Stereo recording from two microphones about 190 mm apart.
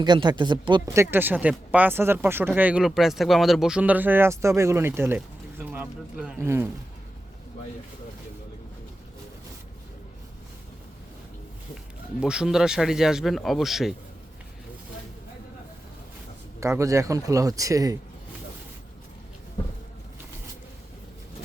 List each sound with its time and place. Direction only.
0.0 s speech: 25° right (ahead or behind)
12.2 s speech: 5° right (ahead or behind)
16.6 s speech: 15° right (ahead or behind)